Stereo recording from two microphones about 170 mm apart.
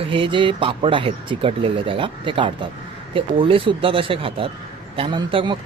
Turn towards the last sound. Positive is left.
turn(degrees=-30)  # may be behind; listen again after turning